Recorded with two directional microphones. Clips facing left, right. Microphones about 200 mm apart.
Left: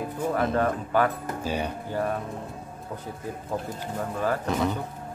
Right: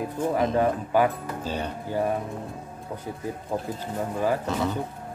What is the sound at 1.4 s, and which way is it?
Speech, 10° left (ahead or behind).